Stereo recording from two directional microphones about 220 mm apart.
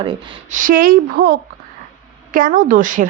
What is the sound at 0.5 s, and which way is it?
Speech, 40° right (ahead or behind).